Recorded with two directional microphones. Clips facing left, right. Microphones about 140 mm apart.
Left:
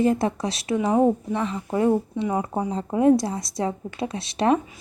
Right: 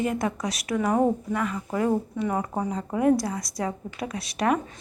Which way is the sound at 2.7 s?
25° left (ahead or behind).